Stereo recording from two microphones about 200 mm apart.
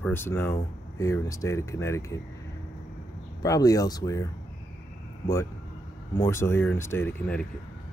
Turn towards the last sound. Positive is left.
turn(degrees=10)  # may be behind; listen again after turning